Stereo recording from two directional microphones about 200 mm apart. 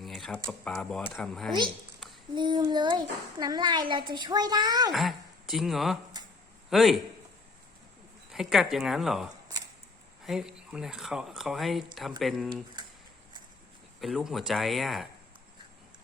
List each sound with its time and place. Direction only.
0.0 s a sound: centre (ahead or behind)
0.6 s speech: 5° left (ahead or behind)
2.3 s a child's voice: 20° right (ahead or behind)
4.9 s speech: centre (ahead or behind)
8.3 s speech: centre (ahead or behind)
14.0 s speech: centre (ahead or behind)